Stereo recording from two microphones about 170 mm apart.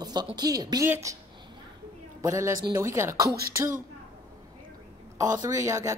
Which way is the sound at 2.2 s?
20° right (ahead or behind).